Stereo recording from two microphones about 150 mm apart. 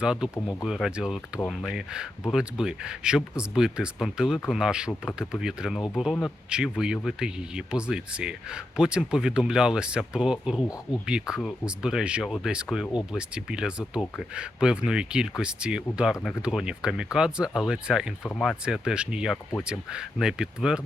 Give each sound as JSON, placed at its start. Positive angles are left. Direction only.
{"t": 0.0, "sound": "speech", "side_deg": -5}
{"t": 18.3, "sound": "speech", "side_deg": 5}
{"t": 18.6, "sound": "speech", "side_deg": -5}